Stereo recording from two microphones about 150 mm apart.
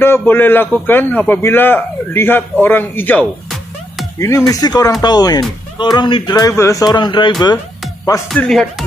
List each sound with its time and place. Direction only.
0.0 s a man's voice: 15° left (ahead or behind); by 7.5 s 30° left (ahead or behind)
8.3 s speech: centre (ahead or behind)